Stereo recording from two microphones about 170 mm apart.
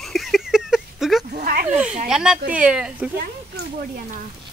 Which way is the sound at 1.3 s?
60° right (ahead or behind).